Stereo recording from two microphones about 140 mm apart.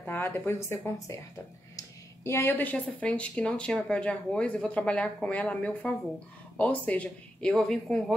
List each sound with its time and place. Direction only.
0.0 s speech: 15° left (ahead or behind)